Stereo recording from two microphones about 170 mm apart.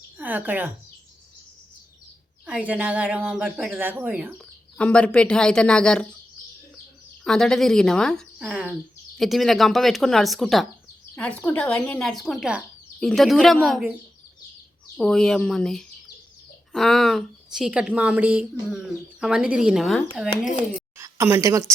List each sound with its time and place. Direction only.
0.2 s speech: 10° right (ahead or behind)
2.5 s speech: 10° right (ahead or behind)
4.4 s speech: 5° left (ahead or behind)
7.3 s speech: 5° left (ahead or behind)
14.9 s speech: 5° left (ahead or behind)
21.0 s a woman's voice: 15° right (ahead or behind)